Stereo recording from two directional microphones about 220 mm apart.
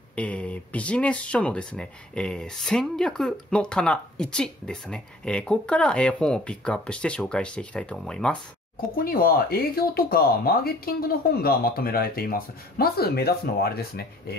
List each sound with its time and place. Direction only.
0.1 s speech: 5° left (ahead or behind)
8.9 s speech: 40° left (ahead or behind)